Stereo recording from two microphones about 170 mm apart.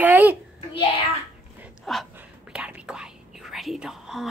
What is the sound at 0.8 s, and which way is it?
Speech, 35° left (ahead or behind).